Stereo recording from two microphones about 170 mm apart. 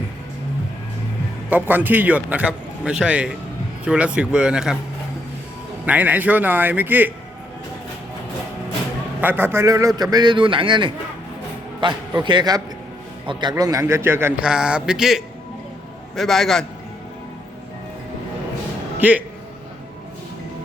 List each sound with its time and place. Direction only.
1.5 s a man's voice: 10° right (ahead or behind)
5.8 s a man's voice: 10° right (ahead or behind)
9.2 s a man's voice: 10° right (ahead or behind)
18.9 s a man's voice: 10° right (ahead or behind)